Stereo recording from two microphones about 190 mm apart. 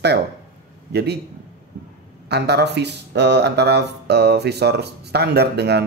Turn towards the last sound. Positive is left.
turn(degrees=-60)  # may be behind; listen again after turning